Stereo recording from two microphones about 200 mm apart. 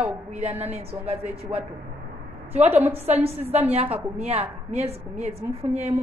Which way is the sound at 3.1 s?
35° right (ahead or behind).